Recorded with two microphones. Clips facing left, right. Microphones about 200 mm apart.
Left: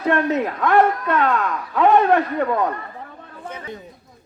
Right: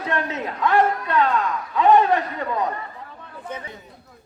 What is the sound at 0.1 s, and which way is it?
Speech, 60° left (ahead or behind).